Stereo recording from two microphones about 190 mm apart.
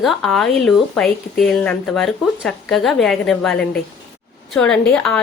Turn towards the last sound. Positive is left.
turn(degrees=0)  # may be behind; listen again after turning